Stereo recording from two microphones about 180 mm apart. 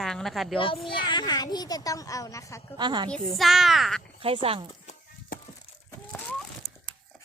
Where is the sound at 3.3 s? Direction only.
Centre (ahead or behind).